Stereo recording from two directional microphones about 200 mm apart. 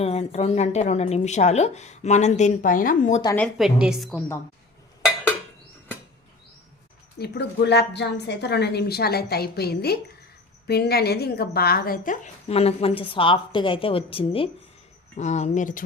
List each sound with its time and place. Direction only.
0.0 s a woman's voice: 30° left (ahead or behind)
3.3 s a woman's voice: centre (ahead or behind)
7.2 s a woman's voice: 55° left (ahead or behind); by 15.8 s 40° left (ahead or behind)